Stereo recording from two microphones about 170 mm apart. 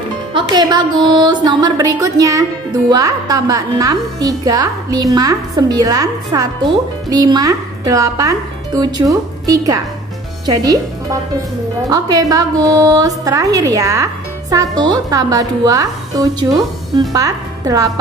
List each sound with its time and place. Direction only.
0.3 s a woman's voice: 25° right (ahead or behind)